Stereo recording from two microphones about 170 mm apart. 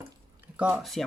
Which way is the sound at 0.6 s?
5° right (ahead or behind).